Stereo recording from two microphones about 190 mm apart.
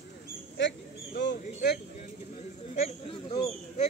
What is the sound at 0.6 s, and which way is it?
Bird, 65° left (ahead or behind).